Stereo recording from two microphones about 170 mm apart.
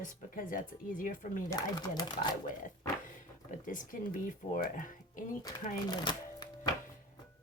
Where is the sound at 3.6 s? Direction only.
50° left (ahead or behind).